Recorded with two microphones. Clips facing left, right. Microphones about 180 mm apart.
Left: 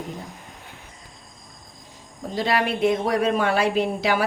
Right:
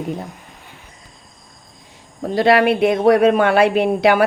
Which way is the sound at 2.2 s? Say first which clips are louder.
Right 9 dB; 70° right (ahead or behind).